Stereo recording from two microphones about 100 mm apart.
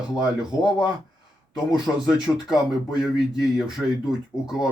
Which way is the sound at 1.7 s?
5° right (ahead or behind).